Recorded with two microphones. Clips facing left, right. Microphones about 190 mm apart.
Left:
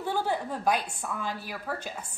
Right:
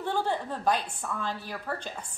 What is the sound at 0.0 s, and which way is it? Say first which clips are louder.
A woman's voice: even; 10° left (ahead or behind).